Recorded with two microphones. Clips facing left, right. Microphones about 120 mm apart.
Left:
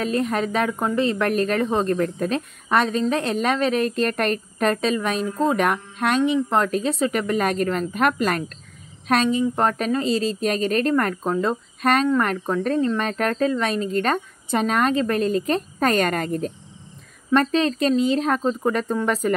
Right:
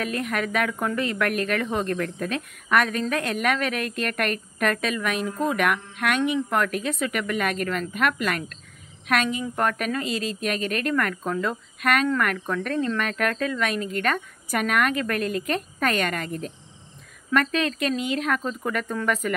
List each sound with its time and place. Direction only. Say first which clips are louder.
0.0 s a woman's voice: left 5 dB; 30° left (ahead or behind)